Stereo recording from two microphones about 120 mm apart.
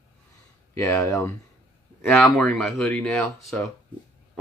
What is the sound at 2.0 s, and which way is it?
Speech, 5° left (ahead or behind).